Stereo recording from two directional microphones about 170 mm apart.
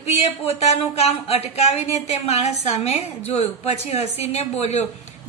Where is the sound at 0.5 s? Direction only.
35° left (ahead or behind).